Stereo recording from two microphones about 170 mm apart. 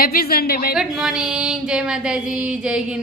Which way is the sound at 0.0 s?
60° left (ahead or behind).